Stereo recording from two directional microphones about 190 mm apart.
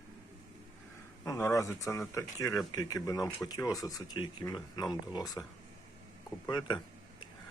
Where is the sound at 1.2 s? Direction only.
15° left (ahead or behind).